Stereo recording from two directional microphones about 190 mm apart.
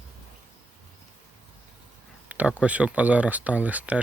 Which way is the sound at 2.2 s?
10° right (ahead or behind).